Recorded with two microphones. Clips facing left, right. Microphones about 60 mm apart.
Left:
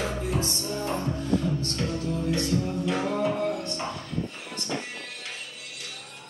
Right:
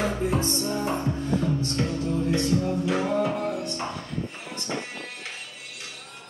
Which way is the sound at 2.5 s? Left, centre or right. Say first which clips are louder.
Right 2 dB; centre.